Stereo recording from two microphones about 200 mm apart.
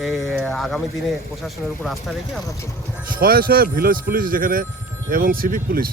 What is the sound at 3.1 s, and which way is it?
Speech, 45° right (ahead or behind).